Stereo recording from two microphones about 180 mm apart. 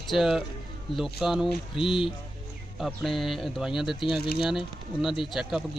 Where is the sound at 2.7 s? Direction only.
Centre (ahead or behind).